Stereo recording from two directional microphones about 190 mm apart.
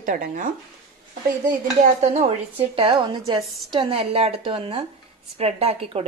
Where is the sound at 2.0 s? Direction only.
35° right (ahead or behind).